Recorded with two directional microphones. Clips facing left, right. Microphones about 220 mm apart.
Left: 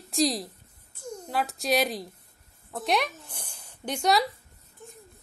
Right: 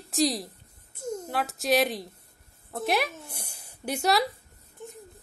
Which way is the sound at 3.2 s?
10° right (ahead or behind).